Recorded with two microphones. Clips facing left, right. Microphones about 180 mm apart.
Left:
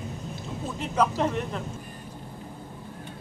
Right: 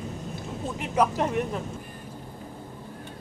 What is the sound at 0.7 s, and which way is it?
Speech, 10° right (ahead or behind).